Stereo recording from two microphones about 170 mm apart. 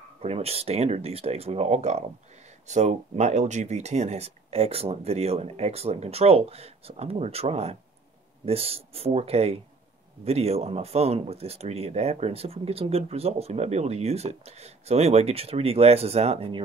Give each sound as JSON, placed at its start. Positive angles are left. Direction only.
{"t": 0.2, "sound": "speech", "side_deg": -35}